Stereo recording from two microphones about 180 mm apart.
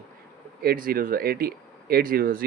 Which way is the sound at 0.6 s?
55° right (ahead or behind).